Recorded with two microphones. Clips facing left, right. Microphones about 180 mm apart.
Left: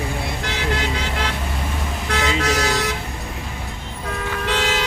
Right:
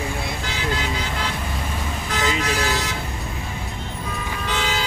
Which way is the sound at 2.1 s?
70° left (ahead or behind).